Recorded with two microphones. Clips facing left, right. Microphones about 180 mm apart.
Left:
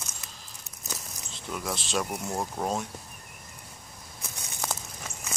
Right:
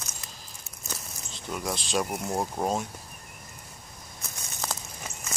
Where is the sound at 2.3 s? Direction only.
15° right (ahead or behind).